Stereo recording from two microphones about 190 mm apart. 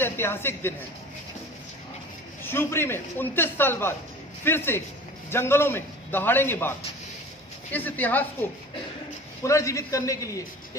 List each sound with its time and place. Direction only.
0.0 s a man's voice: 10° left (ahead or behind)
2.4 s a man's voice: 10° left (ahead or behind)
7.7 s a man's voice: 10° left (ahead or behind)